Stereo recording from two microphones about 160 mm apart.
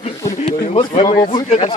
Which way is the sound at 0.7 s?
30° left (ahead or behind).